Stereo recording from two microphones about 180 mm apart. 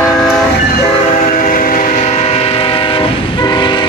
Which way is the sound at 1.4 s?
50° left (ahead or behind).